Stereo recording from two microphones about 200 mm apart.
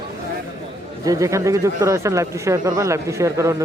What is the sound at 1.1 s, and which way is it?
Speech, 15° right (ahead or behind).